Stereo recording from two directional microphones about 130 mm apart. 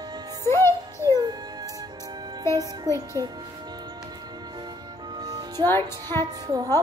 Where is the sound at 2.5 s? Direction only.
30° right (ahead or behind).